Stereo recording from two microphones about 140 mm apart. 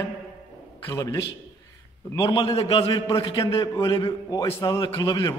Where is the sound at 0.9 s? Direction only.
25° left (ahead or behind).